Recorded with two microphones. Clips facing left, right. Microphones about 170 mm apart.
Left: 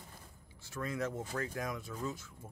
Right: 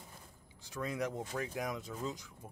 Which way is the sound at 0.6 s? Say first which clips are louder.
Even; 15° right (ahead or behind).